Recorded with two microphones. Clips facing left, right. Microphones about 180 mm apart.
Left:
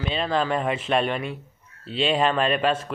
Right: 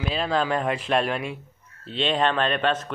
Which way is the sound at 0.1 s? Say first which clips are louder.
Even; centre (ahead or behind).